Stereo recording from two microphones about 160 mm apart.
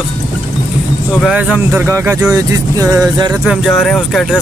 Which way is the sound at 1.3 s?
10° right (ahead or behind).